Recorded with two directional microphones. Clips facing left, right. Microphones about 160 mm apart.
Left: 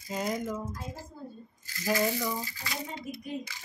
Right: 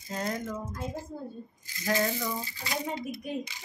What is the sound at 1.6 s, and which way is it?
Rattle, 20° right (ahead or behind).